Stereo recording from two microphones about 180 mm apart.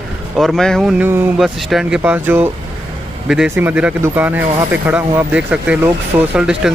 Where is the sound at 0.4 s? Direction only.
Centre (ahead or behind).